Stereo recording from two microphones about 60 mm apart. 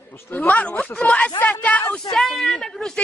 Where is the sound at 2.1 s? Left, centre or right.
Centre.